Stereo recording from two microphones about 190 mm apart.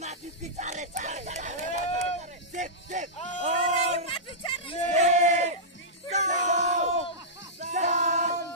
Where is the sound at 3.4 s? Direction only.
35° right (ahead or behind).